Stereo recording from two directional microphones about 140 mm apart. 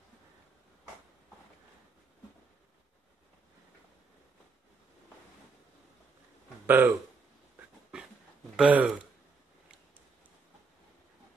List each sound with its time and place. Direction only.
6.6 s speech: 15° right (ahead or behind)
8.5 s speech: 10° right (ahead or behind)